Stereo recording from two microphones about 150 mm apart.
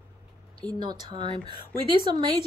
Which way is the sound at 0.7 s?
30° right (ahead or behind).